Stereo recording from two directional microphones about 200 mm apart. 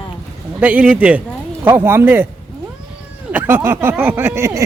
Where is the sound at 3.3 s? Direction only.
10° right (ahead or behind).